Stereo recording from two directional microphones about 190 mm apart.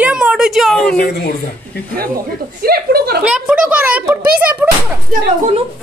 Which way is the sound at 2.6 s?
55° right (ahead or behind).